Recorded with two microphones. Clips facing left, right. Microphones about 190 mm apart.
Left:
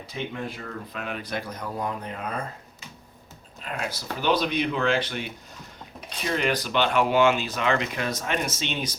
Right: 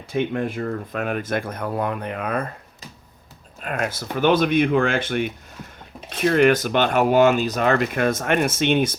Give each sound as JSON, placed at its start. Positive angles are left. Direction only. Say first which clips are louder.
{"t": 0.1, "sound": "speech", "louder": "right 10 dB", "side_deg": -50}
{"t": 3.6, "sound": "speech", "louder": "right 6 dB", "side_deg": -55}